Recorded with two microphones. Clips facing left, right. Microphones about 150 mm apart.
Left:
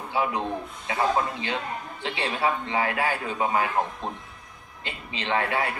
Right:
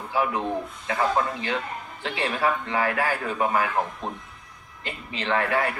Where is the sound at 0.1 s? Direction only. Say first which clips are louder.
Right 2 dB; 25° left (ahead or behind).